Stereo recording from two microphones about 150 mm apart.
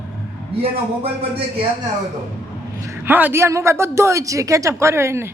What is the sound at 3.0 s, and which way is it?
A woman's voice, 15° right (ahead or behind).